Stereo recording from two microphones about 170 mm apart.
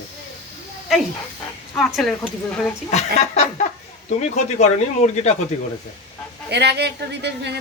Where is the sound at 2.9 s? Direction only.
40° left (ahead or behind).